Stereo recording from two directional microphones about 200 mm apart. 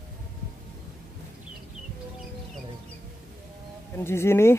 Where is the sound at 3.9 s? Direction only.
10° left (ahead or behind).